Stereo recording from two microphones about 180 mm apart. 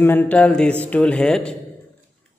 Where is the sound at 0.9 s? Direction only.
5° left (ahead or behind).